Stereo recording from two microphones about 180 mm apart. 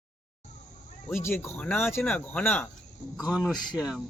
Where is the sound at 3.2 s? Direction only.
5° right (ahead or behind).